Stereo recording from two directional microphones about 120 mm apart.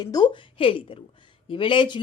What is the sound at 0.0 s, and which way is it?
Speech, 35° left (ahead or behind).